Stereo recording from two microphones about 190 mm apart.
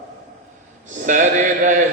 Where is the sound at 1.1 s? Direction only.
40° right (ahead or behind).